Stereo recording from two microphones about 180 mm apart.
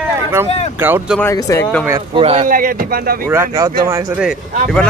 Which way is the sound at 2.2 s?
30° right (ahead or behind).